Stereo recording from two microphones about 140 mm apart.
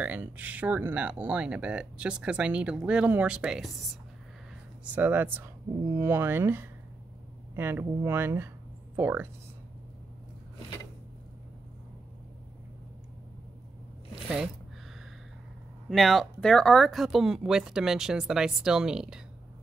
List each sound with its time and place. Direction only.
0.0 s speech: 10° right (ahead or behind)
4.8 s speech: 10° right (ahead or behind)
15.9 s speech: centre (ahead or behind)